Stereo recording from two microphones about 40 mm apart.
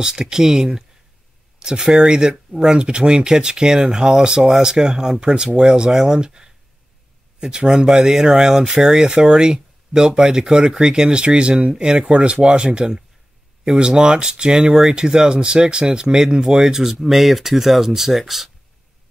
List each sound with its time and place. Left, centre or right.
0.0 s speech: centre